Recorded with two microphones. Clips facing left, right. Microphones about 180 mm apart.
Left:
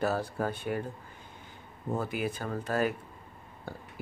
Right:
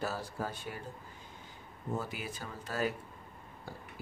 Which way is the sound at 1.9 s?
55° left (ahead or behind).